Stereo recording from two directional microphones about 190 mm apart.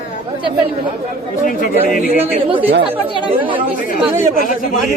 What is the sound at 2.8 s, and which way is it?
Speech, 25° right (ahead or behind).